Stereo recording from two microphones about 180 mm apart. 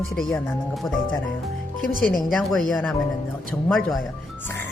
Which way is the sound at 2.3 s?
Centre (ahead or behind).